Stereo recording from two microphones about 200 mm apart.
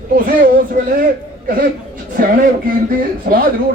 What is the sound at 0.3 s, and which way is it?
Speech, 50° right (ahead or behind).